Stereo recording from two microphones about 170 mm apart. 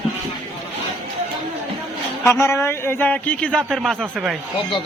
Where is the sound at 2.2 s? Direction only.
15° left (ahead or behind); by 4.3 s centre (ahead or behind).